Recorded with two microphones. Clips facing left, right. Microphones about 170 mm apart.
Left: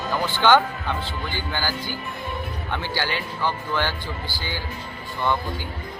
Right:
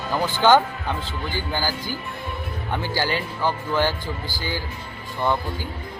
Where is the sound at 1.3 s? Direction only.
40° right (ahead or behind).